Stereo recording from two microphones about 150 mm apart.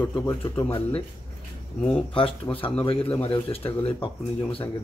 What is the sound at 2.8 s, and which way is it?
Speech, 40° left (ahead or behind).